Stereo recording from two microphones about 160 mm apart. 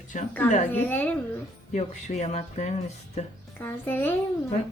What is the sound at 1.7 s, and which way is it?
A woman's voice, 45° left (ahead or behind).